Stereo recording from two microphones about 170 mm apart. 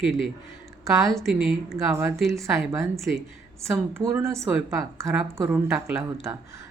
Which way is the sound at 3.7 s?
15° right (ahead or behind).